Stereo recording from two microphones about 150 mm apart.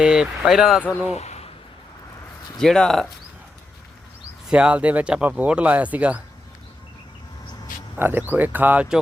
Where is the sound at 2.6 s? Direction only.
5° left (ahead or behind).